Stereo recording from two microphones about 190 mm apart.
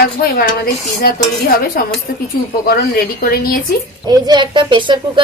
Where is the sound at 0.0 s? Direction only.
55° left (ahead or behind).